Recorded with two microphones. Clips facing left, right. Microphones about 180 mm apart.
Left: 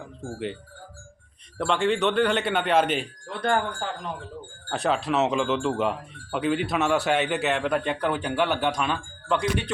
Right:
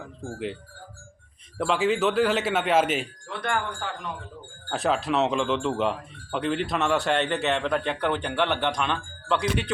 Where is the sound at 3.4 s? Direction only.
35° left (ahead or behind).